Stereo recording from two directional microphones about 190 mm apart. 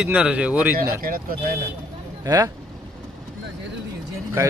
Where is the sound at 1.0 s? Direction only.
50° right (ahead or behind).